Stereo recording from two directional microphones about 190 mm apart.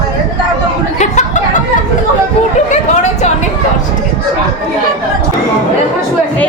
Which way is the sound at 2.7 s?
40° left (ahead or behind).